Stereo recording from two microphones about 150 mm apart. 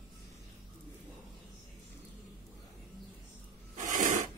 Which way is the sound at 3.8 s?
55° right (ahead or behind).